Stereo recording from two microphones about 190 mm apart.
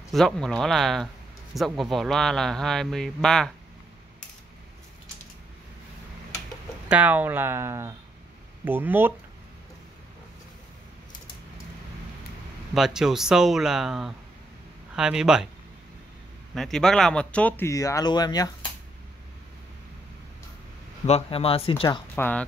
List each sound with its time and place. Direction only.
0.1 s speech: centre (ahead or behind)
6.9 s speech: 10° right (ahead or behind)
12.7 s speech: centre (ahead or behind)
16.5 s speech: centre (ahead or behind); by 18.7 s 20° left (ahead or behind)
21.1 s speech: 30° left (ahead or behind)
22.1 s speech: 10° left (ahead or behind)